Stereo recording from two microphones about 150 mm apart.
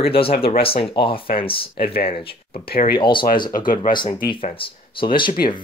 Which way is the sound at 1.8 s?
90° left.